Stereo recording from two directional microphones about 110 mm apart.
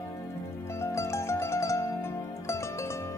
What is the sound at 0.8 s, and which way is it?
Music, 25° left (ahead or behind).